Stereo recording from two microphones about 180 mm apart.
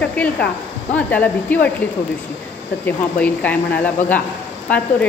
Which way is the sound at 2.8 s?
10° left (ahead or behind).